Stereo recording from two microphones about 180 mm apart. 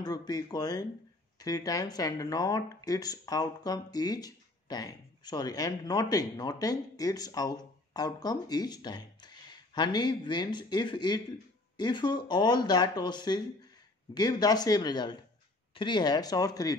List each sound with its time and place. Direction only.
0.0 s speech: 20° left (ahead or behind)